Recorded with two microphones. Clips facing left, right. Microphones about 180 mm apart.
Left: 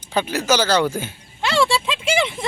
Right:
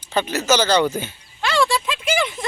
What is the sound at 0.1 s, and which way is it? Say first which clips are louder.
Speech: even; 10° left (ahead or behind).